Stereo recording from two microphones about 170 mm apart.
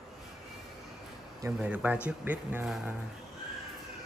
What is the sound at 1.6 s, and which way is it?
Speech, 10° right (ahead or behind).